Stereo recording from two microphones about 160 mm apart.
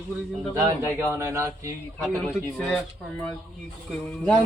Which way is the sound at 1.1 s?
15° right (ahead or behind).